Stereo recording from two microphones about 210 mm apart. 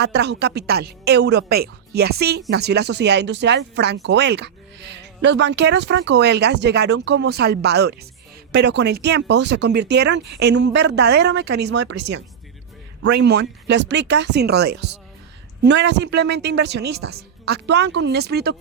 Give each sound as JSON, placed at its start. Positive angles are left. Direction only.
{"t": 0.0, "sound": "speech", "side_deg": -50}